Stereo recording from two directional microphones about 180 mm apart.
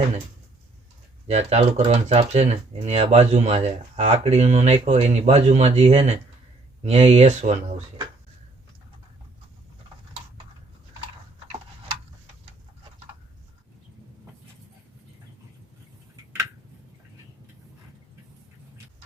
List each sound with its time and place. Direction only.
1.3 s speech: 40° right (ahead or behind)